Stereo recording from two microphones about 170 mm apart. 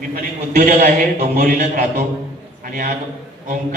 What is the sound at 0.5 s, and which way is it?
Speech, 60° right (ahead or behind).